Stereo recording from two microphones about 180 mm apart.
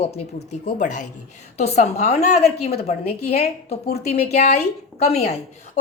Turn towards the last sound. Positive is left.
turn(degrees=35)  # may be behind; listen again after turning